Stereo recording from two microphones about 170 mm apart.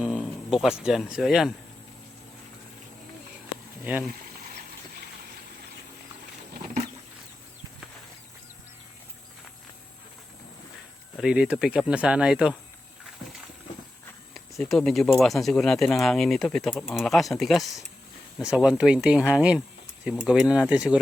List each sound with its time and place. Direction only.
0.0 s speech: 5° right (ahead or behind)
11.2 s speech: 5° right (ahead or behind)
14.3 s speech: centre (ahead or behind)